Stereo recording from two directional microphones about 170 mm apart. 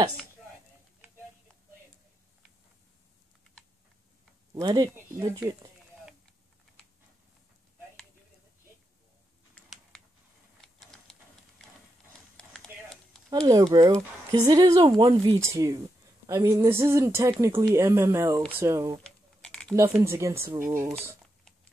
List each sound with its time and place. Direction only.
4.6 s speech: 25° right (ahead or behind)
10.6 s sewing machine: centre (ahead or behind)
12.4 s a sound: 5° left (ahead or behind)
13.3 s speech: 20° right (ahead or behind)
15.3 s speech: 20° right (ahead or behind)
19.0 s typing: 5° left (ahead or behind)
19.7 s speech: 15° right (ahead or behind)